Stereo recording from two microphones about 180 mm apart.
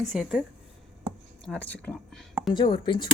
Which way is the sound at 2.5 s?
25° left (ahead or behind).